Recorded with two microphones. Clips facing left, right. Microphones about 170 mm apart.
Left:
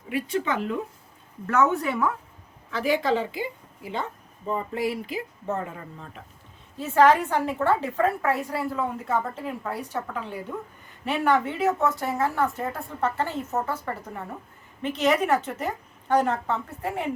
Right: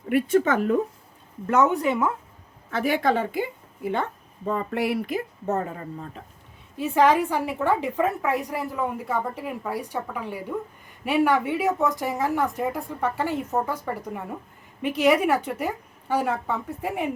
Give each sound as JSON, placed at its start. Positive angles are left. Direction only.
{"t": 0.1, "sound": "speech", "side_deg": -45}
{"t": 1.5, "sound": "speech", "side_deg": -15}
{"t": 2.6, "sound": "a woman's voice", "side_deg": -55}
{"t": 6.7, "sound": "a woman's voice", "side_deg": -15}